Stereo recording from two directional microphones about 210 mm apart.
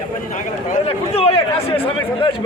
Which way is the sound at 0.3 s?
30° left (ahead or behind).